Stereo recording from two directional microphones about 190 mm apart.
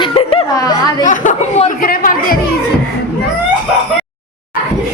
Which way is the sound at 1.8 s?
50° left (ahead or behind).